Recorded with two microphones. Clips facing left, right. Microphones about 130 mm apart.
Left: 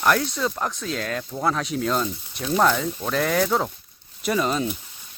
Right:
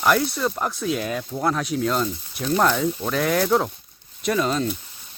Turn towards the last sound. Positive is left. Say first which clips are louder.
# right 1 dB
turn(degrees=5)  # may be behind; listen again after turning